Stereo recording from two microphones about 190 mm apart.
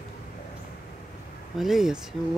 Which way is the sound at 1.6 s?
Centre (ahead or behind).